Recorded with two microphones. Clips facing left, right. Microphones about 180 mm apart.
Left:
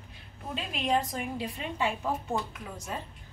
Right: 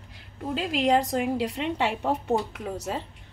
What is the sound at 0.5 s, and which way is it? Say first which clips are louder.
A woman's voice: right 6 dB; 90° right.